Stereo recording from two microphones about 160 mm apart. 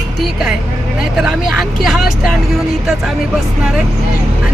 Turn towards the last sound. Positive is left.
turn(degrees=0)  # may be behind; listen again after turning